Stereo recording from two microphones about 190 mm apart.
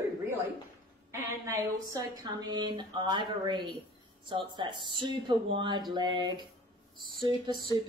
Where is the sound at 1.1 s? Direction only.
15° right (ahead or behind).